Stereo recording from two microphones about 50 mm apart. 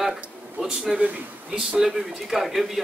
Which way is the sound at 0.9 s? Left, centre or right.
Right.